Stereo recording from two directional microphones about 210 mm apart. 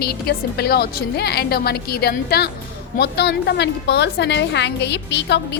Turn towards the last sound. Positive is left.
turn(degrees=55)  # may be behind; listen again after turning